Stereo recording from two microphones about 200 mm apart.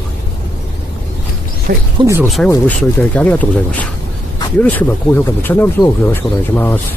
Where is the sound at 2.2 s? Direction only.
Centre (ahead or behind).